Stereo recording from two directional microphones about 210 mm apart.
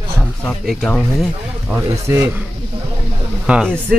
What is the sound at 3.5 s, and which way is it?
Speech, 5° right (ahead or behind).